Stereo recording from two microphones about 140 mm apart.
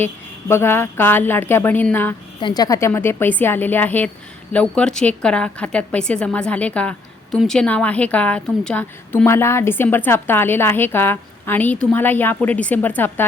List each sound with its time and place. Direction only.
0.0 s a woman's voice: 20° left (ahead or behind)
2.4 s a woman's voice: 30° left (ahead or behind)